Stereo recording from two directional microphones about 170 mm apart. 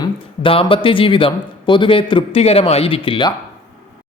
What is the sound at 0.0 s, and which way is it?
Speech, 30° left (ahead or behind).